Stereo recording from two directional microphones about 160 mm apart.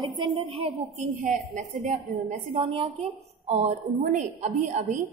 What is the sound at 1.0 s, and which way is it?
A woman's voice, 50° right (ahead or behind).